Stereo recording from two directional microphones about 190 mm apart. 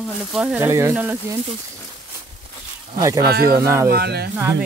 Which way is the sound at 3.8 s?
55° right (ahead or behind).